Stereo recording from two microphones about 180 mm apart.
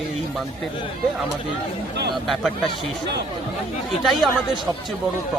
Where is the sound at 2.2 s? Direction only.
Centre (ahead or behind).